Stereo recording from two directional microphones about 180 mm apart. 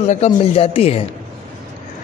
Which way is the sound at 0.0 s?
40° left (ahead or behind).